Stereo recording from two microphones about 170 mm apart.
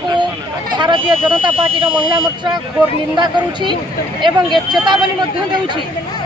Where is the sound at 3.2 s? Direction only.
25° right (ahead or behind).